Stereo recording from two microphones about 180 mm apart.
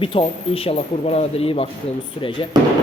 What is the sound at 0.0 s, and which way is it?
A man's voice, 30° left (ahead or behind).